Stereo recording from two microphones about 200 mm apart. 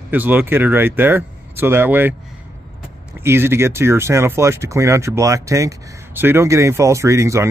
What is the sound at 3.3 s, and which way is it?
Speech, 10° right (ahead or behind).